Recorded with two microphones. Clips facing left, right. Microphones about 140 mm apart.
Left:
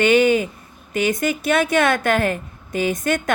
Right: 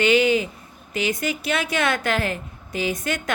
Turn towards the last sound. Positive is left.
turn(degrees=50)  # may be behind; listen again after turning